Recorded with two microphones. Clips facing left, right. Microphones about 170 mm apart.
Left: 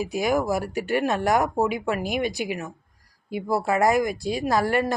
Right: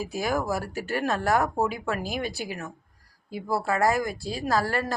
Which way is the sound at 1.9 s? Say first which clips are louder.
Left 4 dB; 35° right (ahead or behind).